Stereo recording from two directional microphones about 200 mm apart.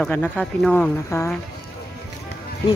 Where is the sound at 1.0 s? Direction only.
15° left (ahead or behind).